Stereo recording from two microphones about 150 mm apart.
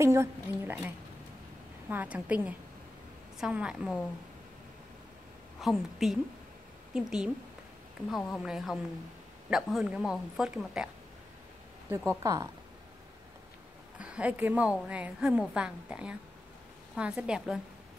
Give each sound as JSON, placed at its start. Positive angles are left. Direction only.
{"t": 0.0, "sound": "a woman's voice", "side_deg": -20}
{"t": 5.6, "sound": "a woman's voice", "side_deg": 0}
{"t": 12.1, "sound": "a woman's voice", "side_deg": -20}
{"t": 13.9, "sound": "a woman's voice", "side_deg": -10}